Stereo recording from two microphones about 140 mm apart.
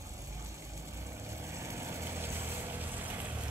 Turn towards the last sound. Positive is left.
turn(degrees=-15)  # may be behind; listen again after turning